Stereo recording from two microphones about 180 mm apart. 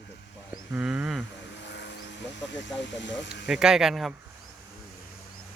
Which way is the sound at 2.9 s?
85° left.